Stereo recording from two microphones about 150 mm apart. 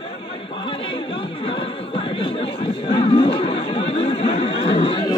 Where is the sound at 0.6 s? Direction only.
35° left (ahead or behind).